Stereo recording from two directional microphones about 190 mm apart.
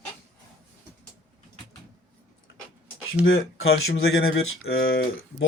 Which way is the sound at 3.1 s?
85° left.